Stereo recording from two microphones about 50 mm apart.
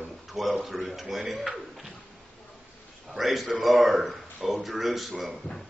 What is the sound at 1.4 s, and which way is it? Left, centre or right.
Speech, centre.